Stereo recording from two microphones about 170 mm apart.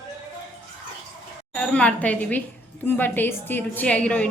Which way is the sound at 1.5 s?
5° left (ahead or behind).